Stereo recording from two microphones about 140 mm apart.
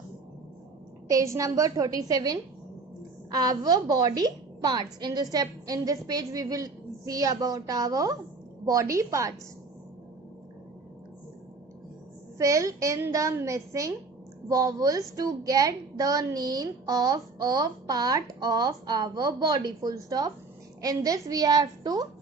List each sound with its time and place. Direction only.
1.0 s a woman's voice: 20° right (ahead or behind)
12.4 s a woman's voice: 25° right (ahead or behind)